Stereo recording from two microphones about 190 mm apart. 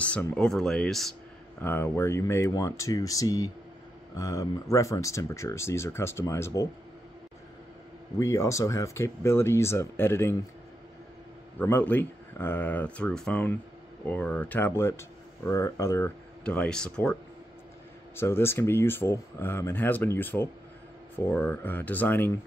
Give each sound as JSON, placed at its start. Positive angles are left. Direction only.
{"t": 0.0, "sound": "speech", "side_deg": 5}
{"t": 1.6, "sound": "speech", "side_deg": 10}
{"t": 8.2, "sound": "speech", "side_deg": 15}
{"t": 11.5, "sound": "speech", "side_deg": 10}